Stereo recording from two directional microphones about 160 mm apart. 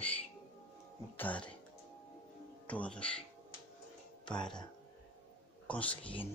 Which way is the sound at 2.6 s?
10° left (ahead or behind).